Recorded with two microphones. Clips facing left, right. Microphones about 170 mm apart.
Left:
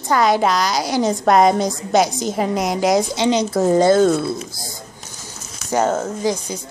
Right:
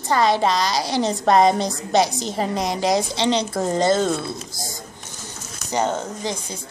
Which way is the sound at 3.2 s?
30° right (ahead or behind).